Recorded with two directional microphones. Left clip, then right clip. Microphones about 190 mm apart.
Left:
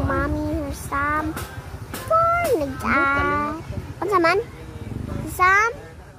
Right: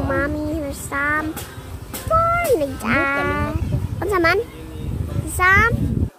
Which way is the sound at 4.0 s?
5° left (ahead or behind).